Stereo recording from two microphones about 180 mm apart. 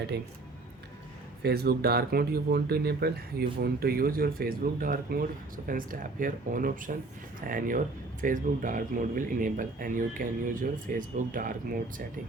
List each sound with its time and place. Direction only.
1.4 s speech: 60° right (ahead or behind)